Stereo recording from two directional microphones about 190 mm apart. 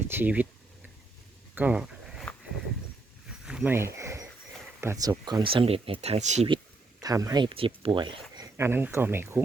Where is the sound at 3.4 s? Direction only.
5° right (ahead or behind).